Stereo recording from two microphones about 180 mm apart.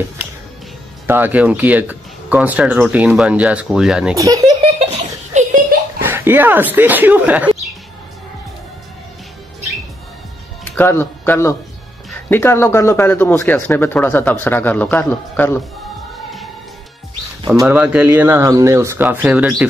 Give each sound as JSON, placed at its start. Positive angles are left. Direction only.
{"t": 1.0, "sound": "speech", "side_deg": -10}
{"t": 4.2, "sound": "a child's voice", "side_deg": -20}
{"t": 5.3, "sound": "a sound", "side_deg": -45}
{"t": 5.9, "sound": "speech", "side_deg": -10}
{"t": 10.6, "sound": "speech", "side_deg": 10}
{"t": 17.6, "sound": "speech", "side_deg": -5}